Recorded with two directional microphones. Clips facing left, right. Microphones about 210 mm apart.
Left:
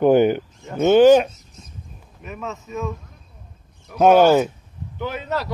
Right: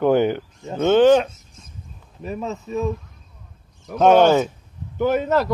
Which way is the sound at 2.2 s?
35° right (ahead or behind).